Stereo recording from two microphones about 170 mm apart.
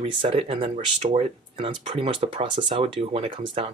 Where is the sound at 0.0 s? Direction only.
35° right (ahead or behind).